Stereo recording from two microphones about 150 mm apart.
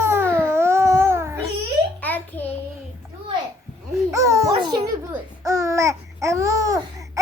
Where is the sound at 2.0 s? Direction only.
10° left (ahead or behind).